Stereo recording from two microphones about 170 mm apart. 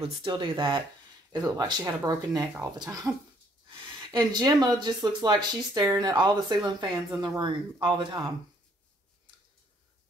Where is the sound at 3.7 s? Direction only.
25° right (ahead or behind).